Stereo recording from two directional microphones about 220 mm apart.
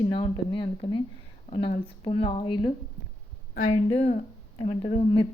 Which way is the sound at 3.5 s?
35° left (ahead or behind).